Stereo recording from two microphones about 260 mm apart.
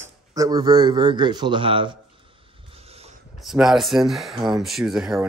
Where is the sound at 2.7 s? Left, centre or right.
Right.